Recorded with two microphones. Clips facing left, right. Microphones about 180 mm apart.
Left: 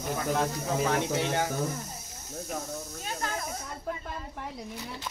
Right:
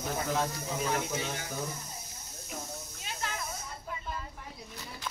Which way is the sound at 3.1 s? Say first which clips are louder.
Left 4 dB; 45° left (ahead or behind).